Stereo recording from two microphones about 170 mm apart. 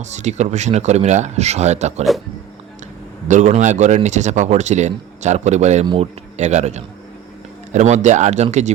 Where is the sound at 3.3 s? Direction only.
45° right (ahead or behind).